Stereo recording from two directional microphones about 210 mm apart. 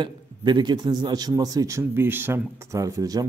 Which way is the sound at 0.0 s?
20° right (ahead or behind).